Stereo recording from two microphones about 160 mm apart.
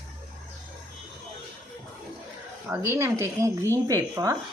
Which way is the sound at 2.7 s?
15° right (ahead or behind).